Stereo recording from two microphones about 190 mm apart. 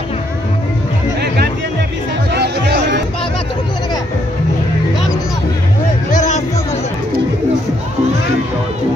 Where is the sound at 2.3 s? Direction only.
60° right (ahead or behind).